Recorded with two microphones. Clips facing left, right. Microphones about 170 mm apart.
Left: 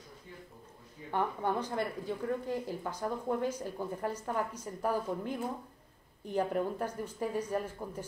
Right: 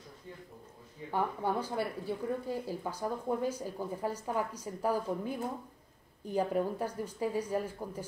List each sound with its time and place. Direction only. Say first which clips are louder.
1.1 s a woman's voice: even; 10° right (ahead or behind)